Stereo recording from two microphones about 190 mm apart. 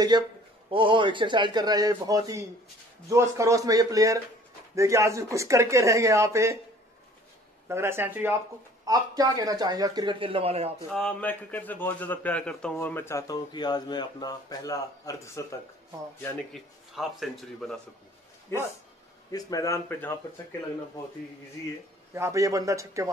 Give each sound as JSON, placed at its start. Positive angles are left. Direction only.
{"t": 0.1, "sound": "speech", "side_deg": -20}
{"t": 7.6, "sound": "speech", "side_deg": -15}
{"t": 10.9, "sound": "a man's voice", "side_deg": 5}
{"t": 16.2, "sound": "a man's voice", "side_deg": 0}
{"t": 18.5, "sound": "a man's voice", "side_deg": 15}
{"t": 22.1, "sound": "speech", "side_deg": -15}